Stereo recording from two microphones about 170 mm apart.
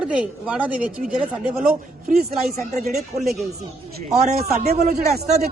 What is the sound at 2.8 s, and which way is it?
Speech, 40° right (ahead or behind).